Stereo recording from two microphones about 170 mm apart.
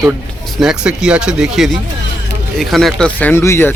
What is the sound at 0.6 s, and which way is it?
Speech, 5° right (ahead or behind).